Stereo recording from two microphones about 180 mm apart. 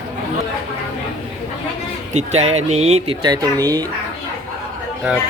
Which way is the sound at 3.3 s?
20° right (ahead or behind).